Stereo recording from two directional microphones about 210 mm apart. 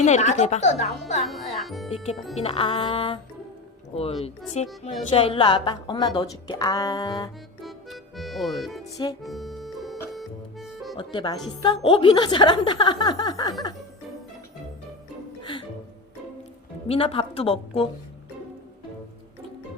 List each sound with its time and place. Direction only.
0.0 s speech: 35° left (ahead or behind)
1.3 s a child's voice: centre (ahead or behind)
2.3 s a woman's voice: 30° left (ahead or behind)
7.6 s music: centre (ahead or behind)
10.9 s a woman's voice: 20° left (ahead or behind)
16.9 s a woman's voice: 25° left (ahead or behind)